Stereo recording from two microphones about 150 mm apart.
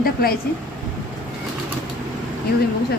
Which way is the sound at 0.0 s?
90° left.